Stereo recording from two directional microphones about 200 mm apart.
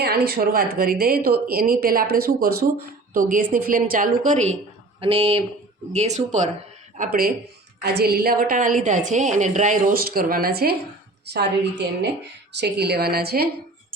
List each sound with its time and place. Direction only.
0.0 s a woman's voice: 50° right (ahead or behind)
12.5 s a woman's voice: 55° right (ahead or behind)